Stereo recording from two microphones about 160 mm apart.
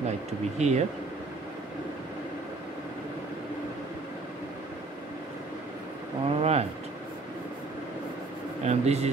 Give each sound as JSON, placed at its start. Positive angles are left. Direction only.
{"t": 0.3, "sound": "speech", "side_deg": -45}
{"t": 6.2, "sound": "speech", "side_deg": -40}
{"t": 8.6, "sound": "speech", "side_deg": -40}